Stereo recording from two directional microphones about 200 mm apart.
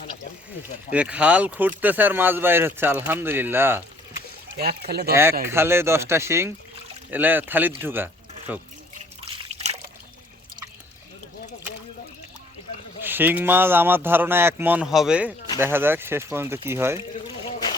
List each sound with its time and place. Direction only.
0.9 s speech: 5° right (ahead or behind)
4.5 s speech: 50° right (ahead or behind)
5.5 s speech: 10° right (ahead or behind)
13.0 s speech: 10° right (ahead or behind)